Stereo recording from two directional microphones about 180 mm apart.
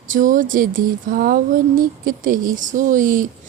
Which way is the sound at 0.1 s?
45° right (ahead or behind).